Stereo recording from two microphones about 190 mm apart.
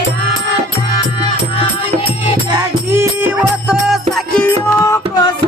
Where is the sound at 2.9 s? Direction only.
10° right (ahead or behind).